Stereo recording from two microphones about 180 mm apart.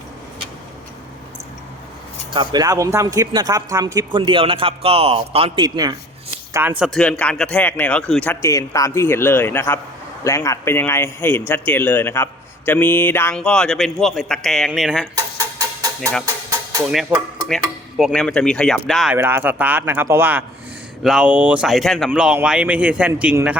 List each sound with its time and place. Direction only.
2.3 s a man's voice: 25° right (ahead or behind)
5.6 s a man's voice: 20° right (ahead or behind)
6.5 s speech: 10° right (ahead or behind)
15.1 s a sound: 20° right (ahead or behind)
16.2 s music: 15° right (ahead or behind)
16.8 s speech: centre (ahead or behind)
19.1 s speech: 10° right (ahead or behind)